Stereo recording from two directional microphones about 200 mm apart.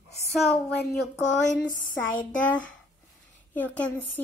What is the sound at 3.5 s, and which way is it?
Speech, 10° left (ahead or behind).